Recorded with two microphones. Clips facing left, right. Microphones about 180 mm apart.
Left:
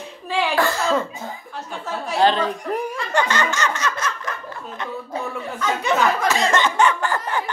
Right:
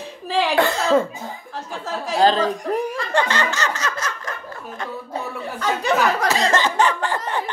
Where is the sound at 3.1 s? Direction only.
30° right (ahead or behind).